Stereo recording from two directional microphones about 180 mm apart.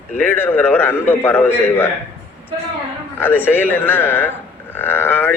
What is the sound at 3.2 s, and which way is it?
Speech, 10° left (ahead or behind).